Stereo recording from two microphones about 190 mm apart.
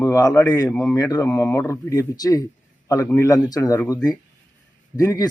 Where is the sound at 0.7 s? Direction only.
5° left (ahead or behind).